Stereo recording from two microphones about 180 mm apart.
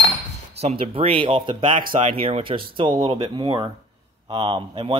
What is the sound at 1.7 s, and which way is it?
Speech, 45° right (ahead or behind).